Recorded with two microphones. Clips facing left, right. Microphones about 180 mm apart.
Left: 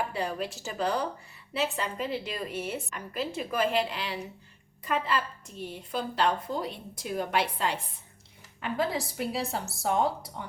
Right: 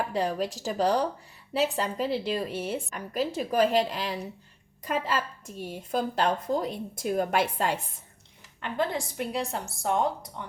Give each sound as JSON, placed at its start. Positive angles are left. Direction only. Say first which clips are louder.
{"t": 0.1, "sound": "a woman's voice", "louder": "right 4 dB", "side_deg": -35}
{"t": 8.6, "sound": "a woman's voice", "louder": "even", "side_deg": 5}